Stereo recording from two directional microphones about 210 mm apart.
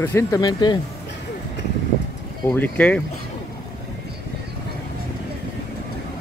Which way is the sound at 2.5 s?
5° left (ahead or behind).